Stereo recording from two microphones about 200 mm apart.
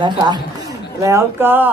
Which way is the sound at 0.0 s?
20° right (ahead or behind).